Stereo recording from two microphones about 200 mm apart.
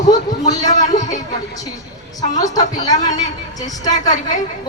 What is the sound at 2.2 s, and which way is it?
Speech, 20° left (ahead or behind).